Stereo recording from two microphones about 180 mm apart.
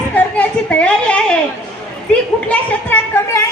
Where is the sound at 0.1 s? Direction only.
5° left (ahead or behind).